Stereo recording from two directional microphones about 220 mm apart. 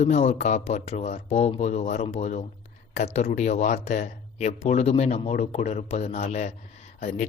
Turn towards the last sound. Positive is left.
turn(degrees=30)  # may be behind; listen again after turning